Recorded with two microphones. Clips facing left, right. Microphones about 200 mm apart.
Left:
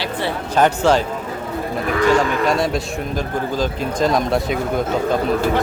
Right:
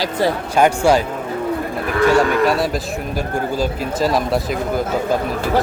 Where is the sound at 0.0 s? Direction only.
40° right (ahead or behind).